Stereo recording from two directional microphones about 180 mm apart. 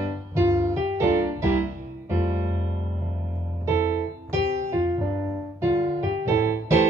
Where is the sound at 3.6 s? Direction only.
15° right (ahead or behind).